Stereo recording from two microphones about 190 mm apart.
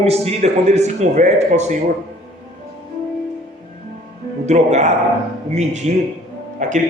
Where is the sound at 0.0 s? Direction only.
30° right (ahead or behind).